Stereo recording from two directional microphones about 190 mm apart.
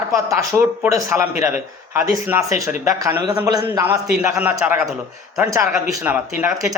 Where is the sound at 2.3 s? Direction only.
15° right (ahead or behind).